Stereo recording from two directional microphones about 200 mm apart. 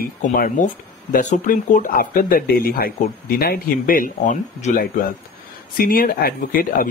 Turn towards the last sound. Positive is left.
turn(degrees=50)  # may be behind; listen again after turning